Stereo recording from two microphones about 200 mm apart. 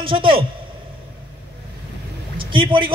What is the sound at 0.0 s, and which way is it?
Speech, 25° right (ahead or behind).